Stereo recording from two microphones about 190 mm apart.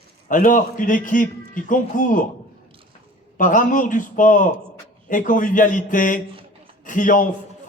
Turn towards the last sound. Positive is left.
turn(degrees=45)  # may be behind; listen again after turning